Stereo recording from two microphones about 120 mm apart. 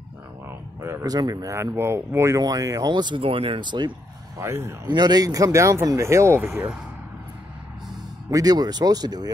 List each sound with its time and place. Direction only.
0.5 s speech: 25° right (ahead or behind); by 3.9 s 40° right (ahead or behind)
4.4 s speech: 25° right (ahead or behind)
4.8 s speech: 35° right (ahead or behind); by 6.7 s 20° right (ahead or behind)
8.3 s speech: 30° right (ahead or behind)